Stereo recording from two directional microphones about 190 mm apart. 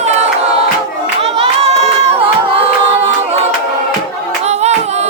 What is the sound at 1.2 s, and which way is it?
Music, 30° right (ahead or behind).